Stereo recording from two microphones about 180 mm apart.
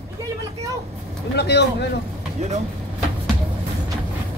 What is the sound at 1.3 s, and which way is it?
Speech, 70° left (ahead or behind).